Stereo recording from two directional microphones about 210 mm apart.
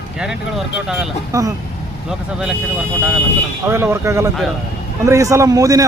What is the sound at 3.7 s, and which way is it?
Speech, 10° right (ahead or behind).